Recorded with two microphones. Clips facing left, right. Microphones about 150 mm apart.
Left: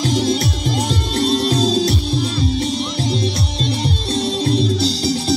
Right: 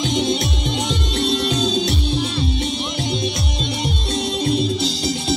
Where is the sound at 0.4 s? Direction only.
35° left (ahead or behind).